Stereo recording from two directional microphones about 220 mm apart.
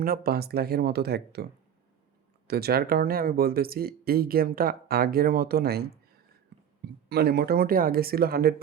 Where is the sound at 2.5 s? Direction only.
45° right (ahead or behind).